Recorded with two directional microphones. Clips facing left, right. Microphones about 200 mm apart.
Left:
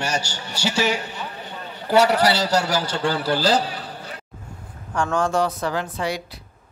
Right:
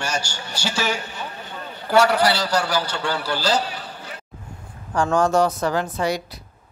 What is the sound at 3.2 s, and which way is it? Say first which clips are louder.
Speech: left 3 dB; 55° left (ahead or behind).